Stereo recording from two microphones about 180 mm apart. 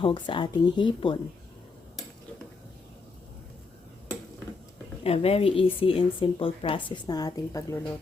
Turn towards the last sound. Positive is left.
turn(degrees=15)  # may be behind; listen again after turning